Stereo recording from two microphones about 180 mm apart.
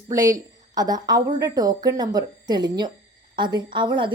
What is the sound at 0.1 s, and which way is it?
A woman's voice, 20° right (ahead or behind).